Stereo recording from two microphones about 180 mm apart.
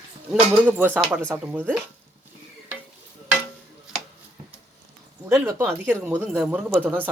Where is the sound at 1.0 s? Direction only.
Centre (ahead or behind).